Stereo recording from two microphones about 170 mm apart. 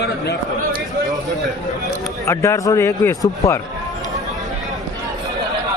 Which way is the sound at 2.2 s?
20° left (ahead or behind).